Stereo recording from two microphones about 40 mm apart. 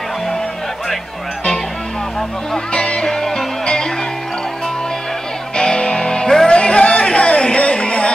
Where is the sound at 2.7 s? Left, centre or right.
Left.